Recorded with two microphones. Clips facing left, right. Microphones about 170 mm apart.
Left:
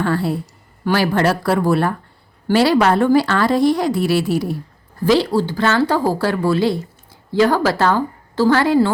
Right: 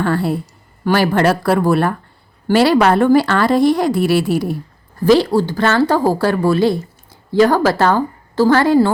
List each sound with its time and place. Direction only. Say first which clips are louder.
0.0 s speech: right 2 dB; 55° right (ahead or behind)